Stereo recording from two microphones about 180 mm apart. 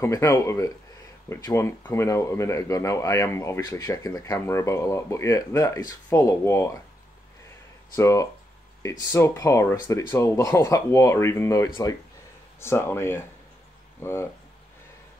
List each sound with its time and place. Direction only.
0.0 s speech: 15° left (ahead or behind)
7.9 s speech: 15° left (ahead or behind)